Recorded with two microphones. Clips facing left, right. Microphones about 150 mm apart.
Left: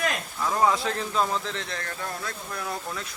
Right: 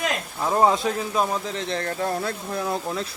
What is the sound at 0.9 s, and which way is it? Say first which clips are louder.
Speech: right 3 dB; 10° right (ahead or behind).